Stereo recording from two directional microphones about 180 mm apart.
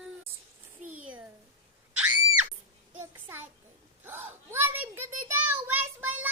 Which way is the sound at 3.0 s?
15° right (ahead or behind).